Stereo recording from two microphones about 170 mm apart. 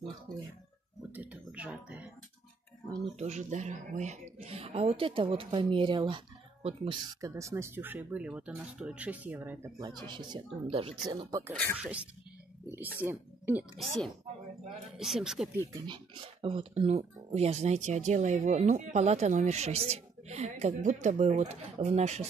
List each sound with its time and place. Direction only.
1.1 s a sound: 10° right (ahead or behind)
3.2 s speech: 45° right (ahead or behind)
7.2 s speech: 20° right (ahead or behind)
9.8 s speech: 25° right (ahead or behind)
11.2 s speech: 20° right (ahead or behind)
11.7 s speech: 5° right (ahead or behind)
12.6 s a sound: 10° right (ahead or behind)
13.0 s speech: 15° right (ahead or behind)
13.7 s speech: centre (ahead or behind)
15.7 s speech: 30° right (ahead or behind)